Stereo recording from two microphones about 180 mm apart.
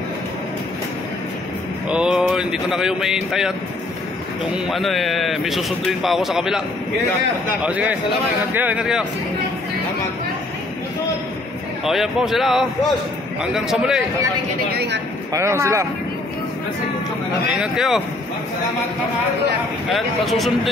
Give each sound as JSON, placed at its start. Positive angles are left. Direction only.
{"t": 1.9, "sound": "a man's voice", "side_deg": -5}
{"t": 7.6, "sound": "a man's voice", "side_deg": -10}
{"t": 11.8, "sound": "a man's voice", "side_deg": 0}
{"t": 14.7, "sound": "speech", "side_deg": -65}
{"t": 15.3, "sound": "a man's voice", "side_deg": -15}
{"t": 17.6, "sound": "a man's voice", "side_deg": 0}
{"t": 19.9, "sound": "a man's voice", "side_deg": 0}